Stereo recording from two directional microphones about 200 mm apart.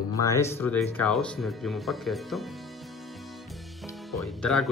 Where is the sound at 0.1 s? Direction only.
15° left (ahead or behind); by 2.4 s centre (ahead or behind).